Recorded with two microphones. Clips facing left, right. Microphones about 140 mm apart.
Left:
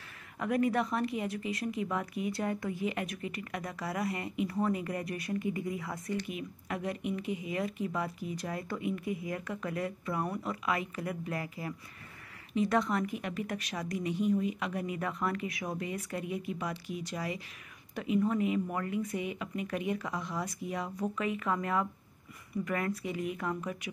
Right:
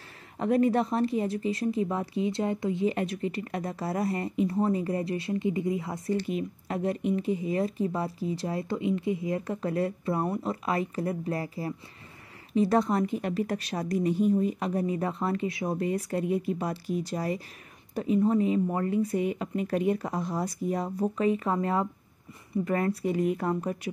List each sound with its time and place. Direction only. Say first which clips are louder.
0.4 s speech: right 5 dB; 30° right (ahead or behind)